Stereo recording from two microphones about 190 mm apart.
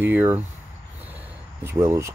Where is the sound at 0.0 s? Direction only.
10° right (ahead or behind).